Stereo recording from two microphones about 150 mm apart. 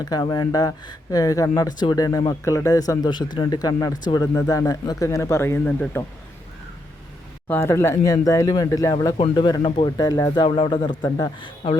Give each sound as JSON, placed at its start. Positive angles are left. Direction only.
{"t": 0.0, "sound": "speech", "side_deg": 25}
{"t": 7.4, "sound": "speech", "side_deg": 20}